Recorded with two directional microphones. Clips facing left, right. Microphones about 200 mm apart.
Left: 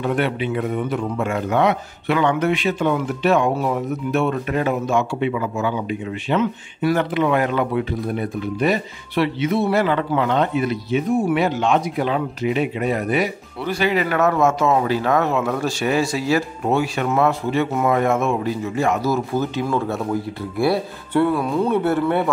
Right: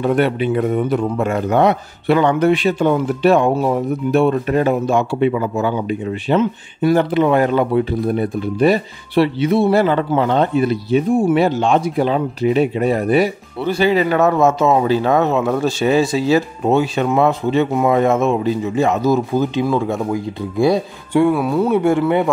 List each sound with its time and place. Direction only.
0.1 s speech: 40° right (ahead or behind); by 22.3 s 15° right (ahead or behind)